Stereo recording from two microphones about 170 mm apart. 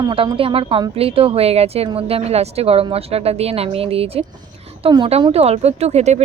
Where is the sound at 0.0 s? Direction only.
25° right (ahead or behind).